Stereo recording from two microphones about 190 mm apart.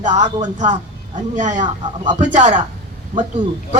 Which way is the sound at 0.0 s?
40° right (ahead or behind).